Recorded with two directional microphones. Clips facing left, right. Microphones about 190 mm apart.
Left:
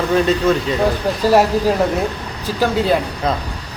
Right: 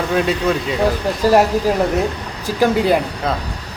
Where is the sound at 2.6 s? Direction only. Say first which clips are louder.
Right 2 dB; 10° right (ahead or behind).